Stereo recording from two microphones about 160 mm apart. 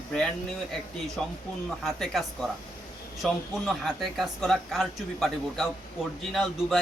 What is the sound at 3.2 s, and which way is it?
Speech, centre (ahead or behind).